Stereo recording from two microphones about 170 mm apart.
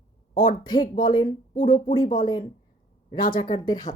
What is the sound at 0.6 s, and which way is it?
Speech, 25° left (ahead or behind).